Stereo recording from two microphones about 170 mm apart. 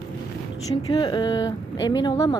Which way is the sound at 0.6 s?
25° left (ahead or behind).